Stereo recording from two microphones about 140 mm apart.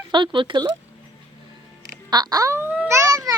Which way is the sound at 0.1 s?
35° right (ahead or behind).